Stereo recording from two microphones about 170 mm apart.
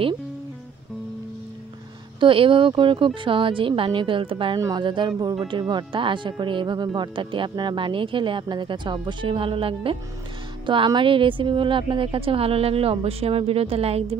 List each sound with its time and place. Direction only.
2.1 s a woman's voice: 30° right (ahead or behind)